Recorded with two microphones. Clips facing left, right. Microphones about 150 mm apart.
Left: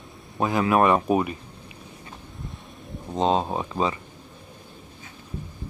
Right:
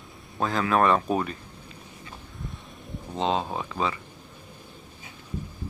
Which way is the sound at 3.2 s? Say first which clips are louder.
Left 4 dB; 40° left (ahead or behind).